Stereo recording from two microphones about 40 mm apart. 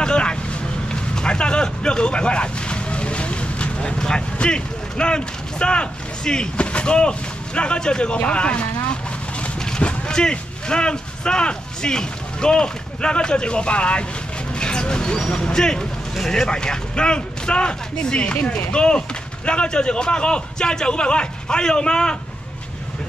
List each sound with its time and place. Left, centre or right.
0.0 s vehicle: left
4.4 s speech: left
9.8 s speech: left